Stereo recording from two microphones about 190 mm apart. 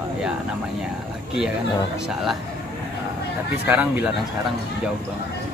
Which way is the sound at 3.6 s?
10° right (ahead or behind).